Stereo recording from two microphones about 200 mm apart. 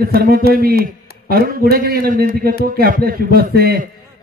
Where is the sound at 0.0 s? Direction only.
50° right (ahead or behind).